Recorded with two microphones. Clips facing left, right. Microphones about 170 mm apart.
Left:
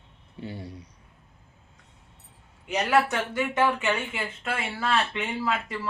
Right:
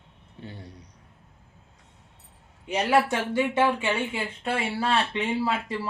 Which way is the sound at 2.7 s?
30° right (ahead or behind).